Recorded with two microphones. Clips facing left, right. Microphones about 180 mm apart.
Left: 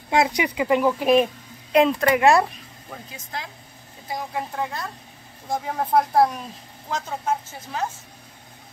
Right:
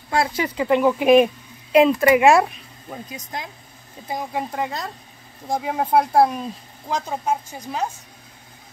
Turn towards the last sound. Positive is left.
turn(degrees=-15)  # may be behind; listen again after turning